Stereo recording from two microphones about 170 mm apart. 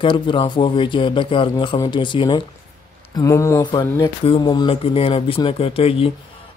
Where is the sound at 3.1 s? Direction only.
15° left (ahead or behind); by 6.1 s 35° left (ahead or behind).